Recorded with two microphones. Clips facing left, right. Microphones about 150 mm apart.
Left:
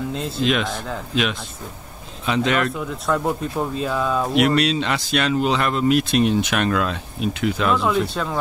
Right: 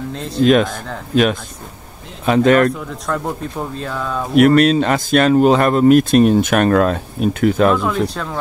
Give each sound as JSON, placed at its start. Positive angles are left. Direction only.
{"t": 0.1, "sound": "speech", "side_deg": 0}
{"t": 0.4, "sound": "speech", "side_deg": -45}
{"t": 2.7, "sound": "speech", "side_deg": 5}
{"t": 4.4, "sound": "speech", "side_deg": -50}
{"t": 7.8, "sound": "speech", "side_deg": 0}